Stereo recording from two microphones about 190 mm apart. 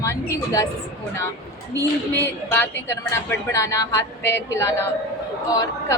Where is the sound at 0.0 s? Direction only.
15° left (ahead or behind).